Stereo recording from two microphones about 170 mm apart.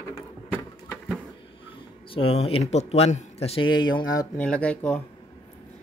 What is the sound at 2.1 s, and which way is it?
Speech, 35° left (ahead or behind).